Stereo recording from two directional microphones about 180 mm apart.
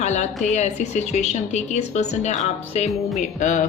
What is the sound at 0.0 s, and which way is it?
A woman's voice, 40° left (ahead or behind).